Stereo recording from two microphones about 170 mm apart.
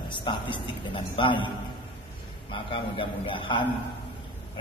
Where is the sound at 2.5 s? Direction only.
30° left (ahead or behind).